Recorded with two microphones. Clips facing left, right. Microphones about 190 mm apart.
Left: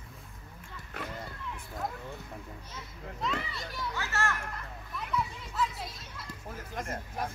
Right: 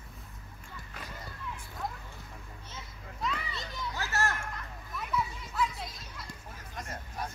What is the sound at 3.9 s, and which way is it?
Speech, 40° right (ahead or behind).